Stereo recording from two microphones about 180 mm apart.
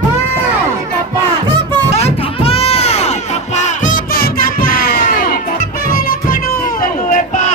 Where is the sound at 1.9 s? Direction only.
35° left (ahead or behind).